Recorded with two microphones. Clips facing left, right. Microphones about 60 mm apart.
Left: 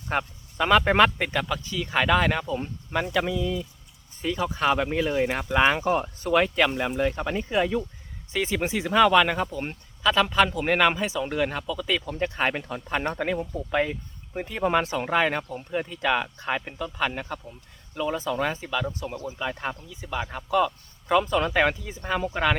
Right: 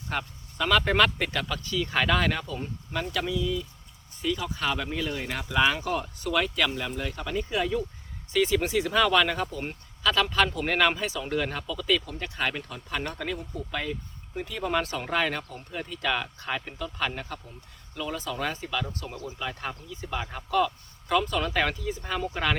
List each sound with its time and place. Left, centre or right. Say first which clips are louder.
0.1 s speech: left 5 dB; left
12.2 s speech: left 5 dB; left; by 22.5 s centre